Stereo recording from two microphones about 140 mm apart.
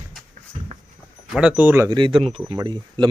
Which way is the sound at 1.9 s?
35° right (ahead or behind).